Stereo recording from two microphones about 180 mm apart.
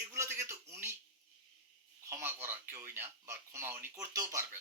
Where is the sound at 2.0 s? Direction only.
15° right (ahead or behind).